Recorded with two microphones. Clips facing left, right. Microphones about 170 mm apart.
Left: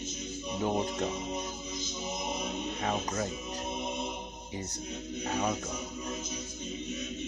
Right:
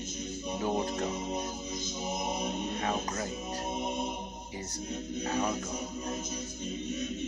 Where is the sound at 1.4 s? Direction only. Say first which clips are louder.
Right 2 dB; 55° right (ahead or behind).